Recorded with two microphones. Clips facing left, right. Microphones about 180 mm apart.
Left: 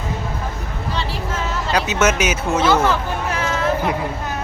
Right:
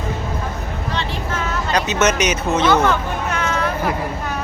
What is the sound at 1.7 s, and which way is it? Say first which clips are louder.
Speech: even; 5° left (ahead or behind).